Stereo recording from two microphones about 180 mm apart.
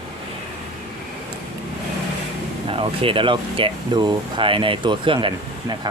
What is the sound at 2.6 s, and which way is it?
Speech, 30° right (ahead or behind).